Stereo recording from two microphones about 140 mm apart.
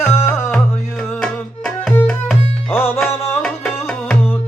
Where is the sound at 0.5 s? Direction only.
5° left (ahead or behind).